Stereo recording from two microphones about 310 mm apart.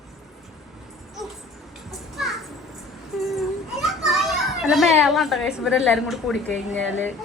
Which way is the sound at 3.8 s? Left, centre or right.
Centre.